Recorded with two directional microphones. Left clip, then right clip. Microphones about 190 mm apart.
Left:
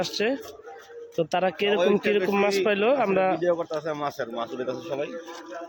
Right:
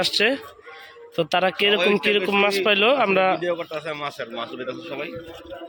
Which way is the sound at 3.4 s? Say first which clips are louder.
Left 1 dB; 25° left (ahead or behind).